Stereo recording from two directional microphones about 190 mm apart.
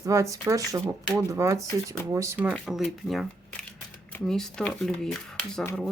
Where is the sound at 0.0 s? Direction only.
15° right (ahead or behind).